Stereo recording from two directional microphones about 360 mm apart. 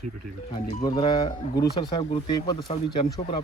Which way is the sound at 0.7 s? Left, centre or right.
Centre.